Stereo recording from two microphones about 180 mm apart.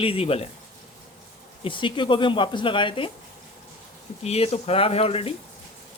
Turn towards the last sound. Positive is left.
turn(degrees=35)  # may be behind; listen again after turning